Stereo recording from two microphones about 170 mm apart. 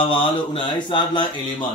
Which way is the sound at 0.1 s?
30° left (ahead or behind).